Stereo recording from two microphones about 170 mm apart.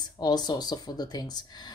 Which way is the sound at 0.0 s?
25° left (ahead or behind).